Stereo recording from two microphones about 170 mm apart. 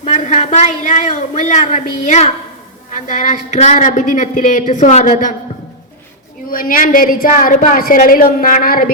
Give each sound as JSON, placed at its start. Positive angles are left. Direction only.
{"t": 0.0, "sound": "a woman's voice", "side_deg": 45}
{"t": 6.5, "sound": "a woman's voice", "side_deg": 55}